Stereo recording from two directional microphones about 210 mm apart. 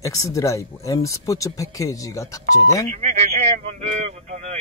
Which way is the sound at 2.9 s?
30° right (ahead or behind).